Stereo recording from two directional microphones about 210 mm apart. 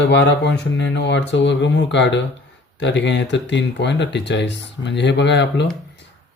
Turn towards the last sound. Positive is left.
turn(degrees=55)  # may be behind; listen again after turning